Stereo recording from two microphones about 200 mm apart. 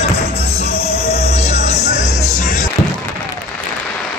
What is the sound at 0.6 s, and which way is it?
Music, 30° left (ahead or behind).